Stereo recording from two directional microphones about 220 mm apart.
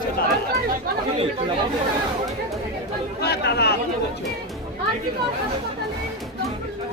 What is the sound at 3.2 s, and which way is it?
Speech, 45° left (ahead or behind).